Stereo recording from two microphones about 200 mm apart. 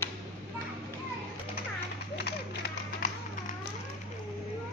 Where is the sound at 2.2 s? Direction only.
55° left (ahead or behind).